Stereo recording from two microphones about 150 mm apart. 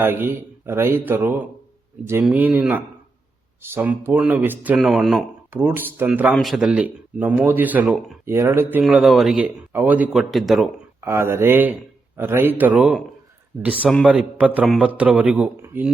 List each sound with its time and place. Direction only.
0.0 s a man's voice: 15° right (ahead or behind)
4.8 s a man's voice: centre (ahead or behind)
5.5 s a man's voice: 15° right (ahead or behind)
8.8 s a man's voice: centre (ahead or behind)
11.0 s a man's voice: 15° right (ahead or behind)